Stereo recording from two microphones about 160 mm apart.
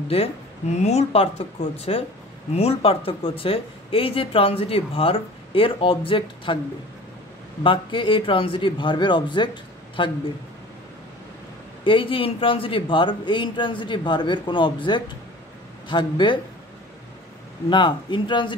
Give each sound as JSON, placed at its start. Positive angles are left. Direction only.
{"t": 0.1, "sound": "speech", "side_deg": 40}
{"t": 7.6, "sound": "speech", "side_deg": 30}
{"t": 11.8, "sound": "speech", "side_deg": 35}
{"t": 17.6, "sound": "speech", "side_deg": 30}